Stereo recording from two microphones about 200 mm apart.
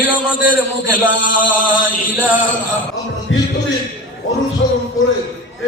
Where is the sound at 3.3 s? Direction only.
70° left (ahead or behind).